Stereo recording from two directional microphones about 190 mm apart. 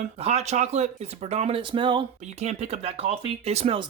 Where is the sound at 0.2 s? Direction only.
35° right (ahead or behind).